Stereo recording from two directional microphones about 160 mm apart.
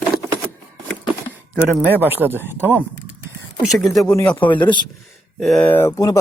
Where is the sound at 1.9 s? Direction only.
10° right (ahead or behind).